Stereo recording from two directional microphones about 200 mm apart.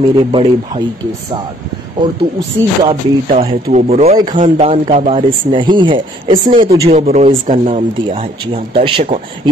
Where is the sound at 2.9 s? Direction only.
30° right (ahead or behind).